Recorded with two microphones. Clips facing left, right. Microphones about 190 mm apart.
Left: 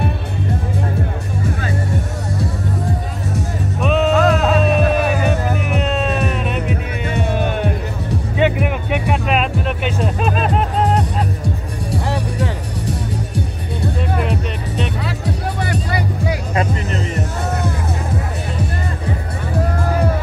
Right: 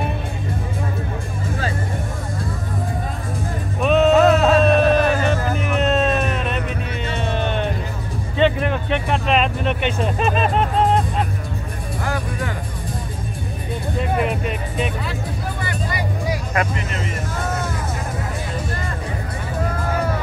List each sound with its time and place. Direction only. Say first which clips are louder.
3.8 s music: right 2 dB; centre (ahead or behind)
5.8 s music: right 3 dB; centre (ahead or behind)
11.0 s music: left 2 dB; 75° left (ahead or behind)
14.1 s music: even; 5° right (ahead or behind)
15.2 s music: left 5 dB; 75° left (ahead or behind)